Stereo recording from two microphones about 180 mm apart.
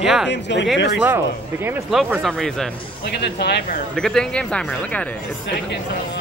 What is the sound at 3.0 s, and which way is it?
Speech, 65° left (ahead or behind).